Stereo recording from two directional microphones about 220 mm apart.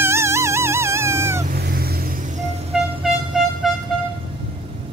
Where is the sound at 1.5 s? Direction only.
45° right (ahead or behind).